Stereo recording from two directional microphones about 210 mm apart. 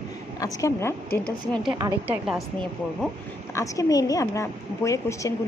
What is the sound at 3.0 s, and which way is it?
A woman's voice, 15° left (ahead or behind).